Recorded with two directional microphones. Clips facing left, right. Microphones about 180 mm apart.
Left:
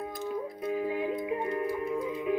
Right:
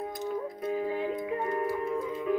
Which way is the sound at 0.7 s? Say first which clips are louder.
Even; 30° right (ahead or behind).